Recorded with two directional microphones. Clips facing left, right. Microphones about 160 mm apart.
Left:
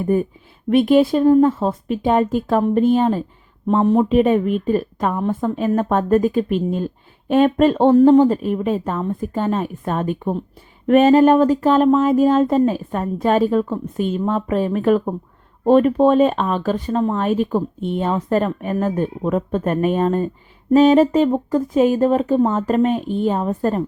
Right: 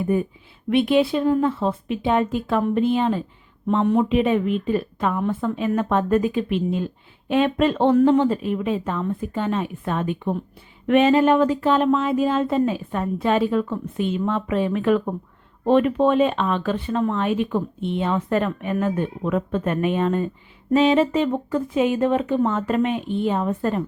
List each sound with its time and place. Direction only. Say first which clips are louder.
0.0 s a woman's voice: left 3 dB; 45° left (ahead or behind)